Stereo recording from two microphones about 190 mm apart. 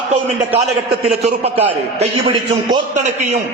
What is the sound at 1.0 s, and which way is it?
A man's voice, 35° right (ahead or behind).